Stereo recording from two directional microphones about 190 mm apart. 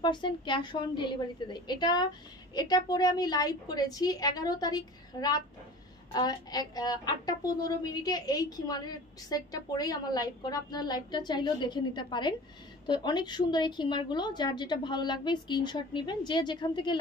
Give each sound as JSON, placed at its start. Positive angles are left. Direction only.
{"t": 0.0, "sound": "a woman's voice", "side_deg": 25}